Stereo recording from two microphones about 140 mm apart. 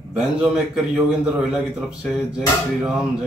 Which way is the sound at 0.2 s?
Centre (ahead or behind).